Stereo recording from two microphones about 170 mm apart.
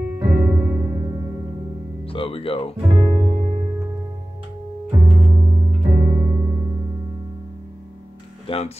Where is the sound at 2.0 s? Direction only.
35° left (ahead or behind).